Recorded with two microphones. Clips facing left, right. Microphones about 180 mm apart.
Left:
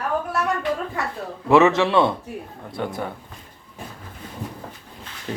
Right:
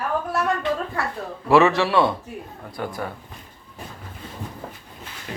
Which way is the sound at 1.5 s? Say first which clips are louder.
Left 1 dB; 20° left (ahead or behind).